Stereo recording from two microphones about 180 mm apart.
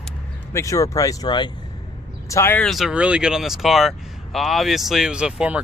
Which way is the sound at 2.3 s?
10° left (ahead or behind).